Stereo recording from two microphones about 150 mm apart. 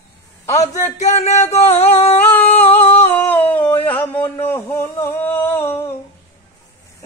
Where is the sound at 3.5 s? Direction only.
10° left (ahead or behind).